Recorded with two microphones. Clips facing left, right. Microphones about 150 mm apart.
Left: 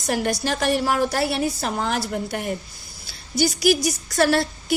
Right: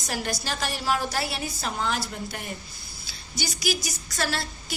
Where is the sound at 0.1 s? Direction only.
55° left (ahead or behind).